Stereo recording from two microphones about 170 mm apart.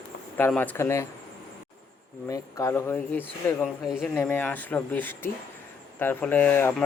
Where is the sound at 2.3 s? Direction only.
20° left (ahead or behind).